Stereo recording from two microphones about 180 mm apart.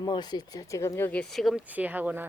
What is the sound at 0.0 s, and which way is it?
A woman's voice, 25° left (ahead or behind).